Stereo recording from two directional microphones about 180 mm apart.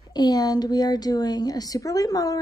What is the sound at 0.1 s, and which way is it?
A woman's voice, 20° left (ahead or behind).